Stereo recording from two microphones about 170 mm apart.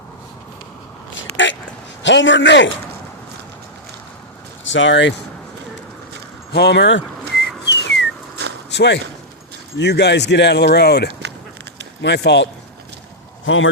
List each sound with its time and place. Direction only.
1.1 s biting: 90° left
2.0 s a man's voice: 90° left
4.6 s speech: 90° left
6.5 s a man's voice: 90° left
7.4 s whistling: 90° left
8.4 s a sound: 80° right
8.7 s speech: 90° left
12.0 s a man's voice: 90° left